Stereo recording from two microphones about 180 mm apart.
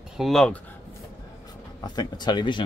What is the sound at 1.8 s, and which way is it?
Speech, 25° left (ahead or behind).